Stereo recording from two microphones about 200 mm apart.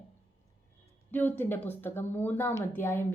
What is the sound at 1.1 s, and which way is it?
A woman's voice, 10° left (ahead or behind).